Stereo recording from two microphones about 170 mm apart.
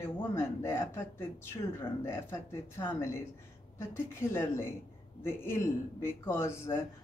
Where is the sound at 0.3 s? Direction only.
15° left (ahead or behind).